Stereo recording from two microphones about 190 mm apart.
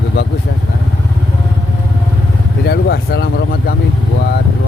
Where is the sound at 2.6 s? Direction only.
55° left (ahead or behind).